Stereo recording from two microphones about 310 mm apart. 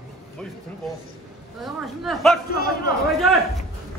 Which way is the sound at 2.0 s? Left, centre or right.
Centre.